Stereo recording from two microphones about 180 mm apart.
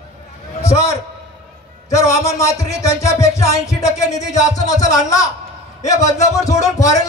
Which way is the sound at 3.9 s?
40° left (ahead or behind).